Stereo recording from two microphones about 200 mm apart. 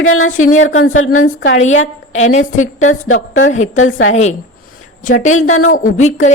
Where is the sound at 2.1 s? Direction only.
35° left (ahead or behind).